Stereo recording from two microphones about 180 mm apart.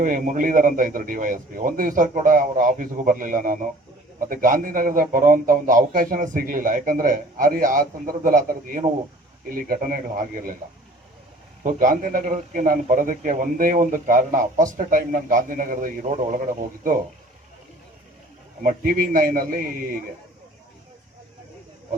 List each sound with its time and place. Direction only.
0.0 s a man's voice: 50° right (ahead or behind)
11.6 s a man's voice: 45° right (ahead or behind)
18.6 s a man's voice: 50° right (ahead or behind)